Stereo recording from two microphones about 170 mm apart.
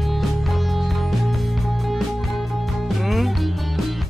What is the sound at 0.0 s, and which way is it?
Music, centre (ahead or behind).